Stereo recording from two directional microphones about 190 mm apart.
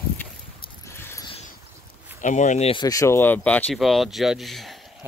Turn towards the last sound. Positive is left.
turn(degrees=0)  # may be behind; listen again after turning